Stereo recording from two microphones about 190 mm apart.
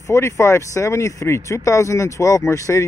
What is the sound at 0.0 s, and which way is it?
Speech, 15° left (ahead or behind).